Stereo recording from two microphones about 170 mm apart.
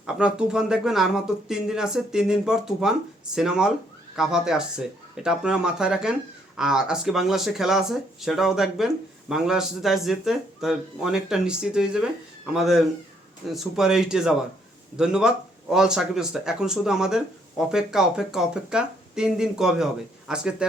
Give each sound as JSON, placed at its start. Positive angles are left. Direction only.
{"t": 0.0, "sound": "speech", "side_deg": -5}